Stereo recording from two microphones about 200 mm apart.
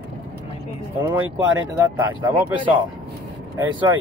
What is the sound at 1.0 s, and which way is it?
Speech, 10° right (ahead or behind).